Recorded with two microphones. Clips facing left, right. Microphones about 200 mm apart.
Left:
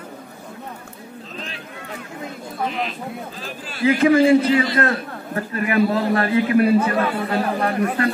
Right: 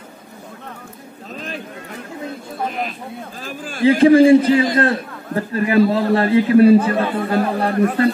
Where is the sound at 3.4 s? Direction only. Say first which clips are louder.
Right 4 dB; 45° right (ahead or behind).